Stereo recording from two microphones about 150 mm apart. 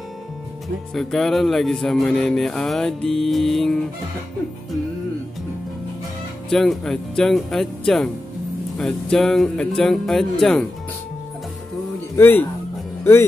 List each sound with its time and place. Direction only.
0.9 s speech: centre (ahead or behind)
6.5 s speech: 5° left (ahead or behind)
12.2 s speech: 15° left (ahead or behind)